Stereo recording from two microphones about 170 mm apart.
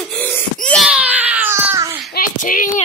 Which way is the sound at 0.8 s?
10° right (ahead or behind).